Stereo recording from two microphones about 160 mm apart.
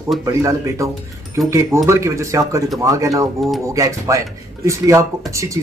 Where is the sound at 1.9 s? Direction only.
20° right (ahead or behind).